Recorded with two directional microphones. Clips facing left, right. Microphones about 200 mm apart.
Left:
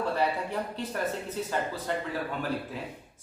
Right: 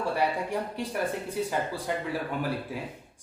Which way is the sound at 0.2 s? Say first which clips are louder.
Right 1 dB; 15° right (ahead or behind).